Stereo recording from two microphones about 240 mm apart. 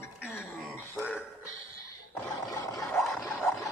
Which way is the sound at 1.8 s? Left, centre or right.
Centre.